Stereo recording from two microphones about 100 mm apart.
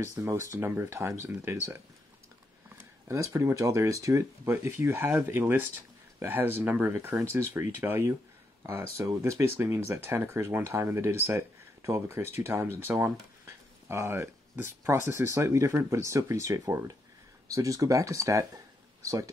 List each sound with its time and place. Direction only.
0.0 s speech: 30° right (ahead or behind)
3.1 s speech: 30° right (ahead or behind)